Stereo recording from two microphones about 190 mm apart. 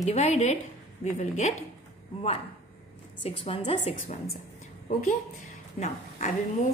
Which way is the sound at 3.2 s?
35° left (ahead or behind).